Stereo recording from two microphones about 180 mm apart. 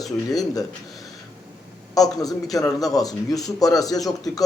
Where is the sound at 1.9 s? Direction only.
20° left (ahead or behind).